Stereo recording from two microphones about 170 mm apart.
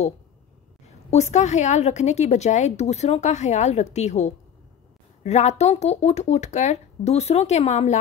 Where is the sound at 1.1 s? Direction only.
40° left (ahead or behind).